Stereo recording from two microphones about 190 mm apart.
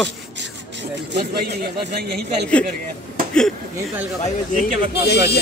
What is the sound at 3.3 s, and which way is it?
Speech, 5° left (ahead or behind).